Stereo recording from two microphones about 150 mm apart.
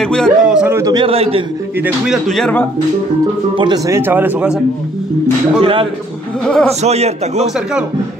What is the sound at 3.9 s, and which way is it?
Speech, 15° right (ahead or behind).